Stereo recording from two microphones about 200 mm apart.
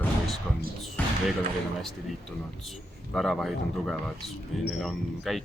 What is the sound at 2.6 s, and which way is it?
Speech, centre (ahead or behind).